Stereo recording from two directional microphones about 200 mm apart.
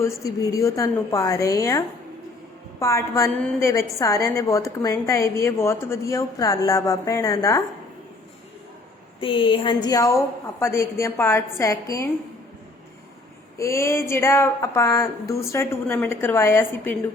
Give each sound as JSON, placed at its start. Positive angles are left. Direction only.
{"t": 0.0, "sound": "a woman's voice", "side_deg": 15}
{"t": 9.2, "sound": "a woman's voice", "side_deg": 25}
{"t": 13.6, "sound": "a woman's voice", "side_deg": 15}